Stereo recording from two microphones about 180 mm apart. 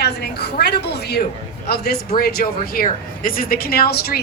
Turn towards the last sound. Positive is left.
turn(degrees=60)  # may be behind; listen again after turning